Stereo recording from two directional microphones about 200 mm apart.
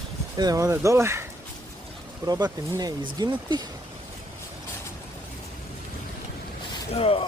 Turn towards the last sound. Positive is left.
turn(degrees=30)  # may be behind; listen again after turning